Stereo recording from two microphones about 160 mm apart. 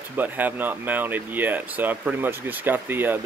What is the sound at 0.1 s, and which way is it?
Speech, 10° right (ahead or behind).